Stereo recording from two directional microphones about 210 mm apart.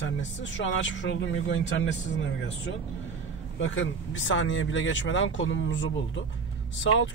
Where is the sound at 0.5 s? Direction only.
60° left (ahead or behind).